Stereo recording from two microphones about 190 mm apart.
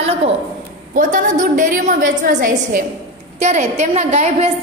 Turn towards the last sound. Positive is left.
turn(degrees=-35)  # may be behind; listen again after turning